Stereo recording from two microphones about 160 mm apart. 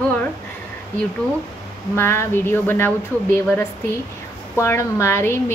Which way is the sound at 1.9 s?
15° left (ahead or behind).